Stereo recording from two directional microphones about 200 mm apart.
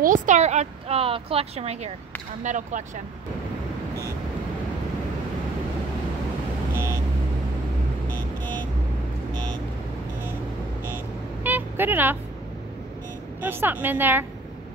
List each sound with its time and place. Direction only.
0.0 s a woman's voice: 40° right (ahead or behind)
8.1 s vehicle: 5° left (ahead or behind)
11.4 s vehicle: 10° right (ahead or behind)
13.4 s a woman's voice: 10° right (ahead or behind)